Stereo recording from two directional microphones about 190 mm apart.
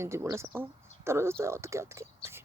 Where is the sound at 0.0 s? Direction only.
15° right (ahead or behind).